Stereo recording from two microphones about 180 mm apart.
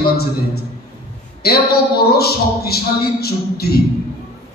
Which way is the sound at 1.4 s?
60° left (ahead or behind).